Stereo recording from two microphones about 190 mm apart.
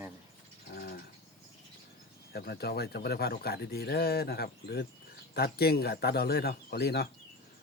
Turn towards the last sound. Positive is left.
turn(degrees=60)  # may be behind; listen again after turning